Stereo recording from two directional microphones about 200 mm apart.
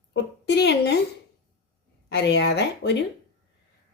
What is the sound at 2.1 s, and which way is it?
Speech, 60° left (ahead or behind).